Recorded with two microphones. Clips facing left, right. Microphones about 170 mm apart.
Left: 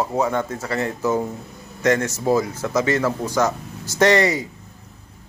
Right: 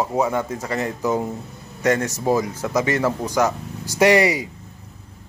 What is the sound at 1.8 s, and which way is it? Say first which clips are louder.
Speech: left 1 dB; 35° right (ahead or behind).